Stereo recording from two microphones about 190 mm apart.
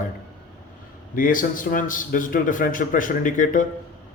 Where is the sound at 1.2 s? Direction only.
45° left (ahead or behind).